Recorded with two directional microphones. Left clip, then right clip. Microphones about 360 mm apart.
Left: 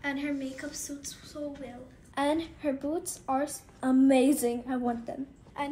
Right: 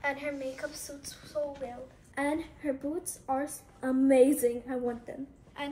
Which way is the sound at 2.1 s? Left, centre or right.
Centre.